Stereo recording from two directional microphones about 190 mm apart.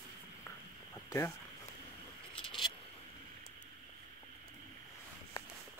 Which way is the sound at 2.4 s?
25° left (ahead or behind).